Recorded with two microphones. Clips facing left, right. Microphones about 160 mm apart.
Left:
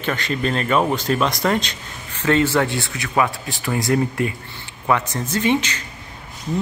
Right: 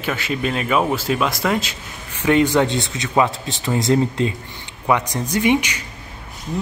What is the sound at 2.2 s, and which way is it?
A man's voice, 15° right (ahead or behind).